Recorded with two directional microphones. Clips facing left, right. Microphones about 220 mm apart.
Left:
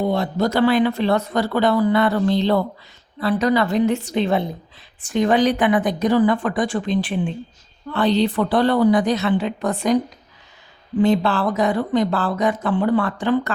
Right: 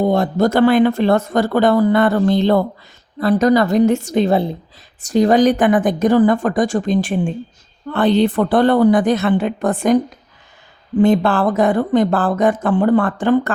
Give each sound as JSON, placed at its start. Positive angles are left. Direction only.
{"t": 0.0, "sound": "speech", "side_deg": -45}
{"t": 11.0, "sound": "speech", "side_deg": -50}